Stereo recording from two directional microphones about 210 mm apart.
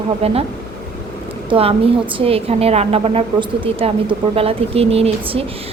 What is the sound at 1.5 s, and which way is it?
A woman's voice, 25° right (ahead or behind).